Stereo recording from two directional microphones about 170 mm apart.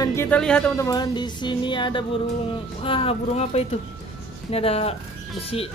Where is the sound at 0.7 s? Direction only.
20° left (ahead or behind).